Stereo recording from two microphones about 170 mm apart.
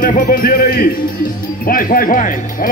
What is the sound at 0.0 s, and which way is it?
Speech, 55° left (ahead or behind).